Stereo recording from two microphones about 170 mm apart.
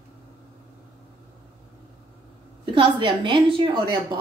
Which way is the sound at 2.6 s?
30° right (ahead or behind).